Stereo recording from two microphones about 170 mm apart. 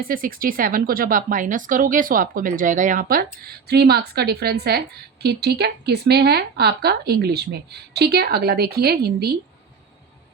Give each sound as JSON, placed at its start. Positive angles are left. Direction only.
{"t": 0.0, "sound": "speech", "side_deg": -55}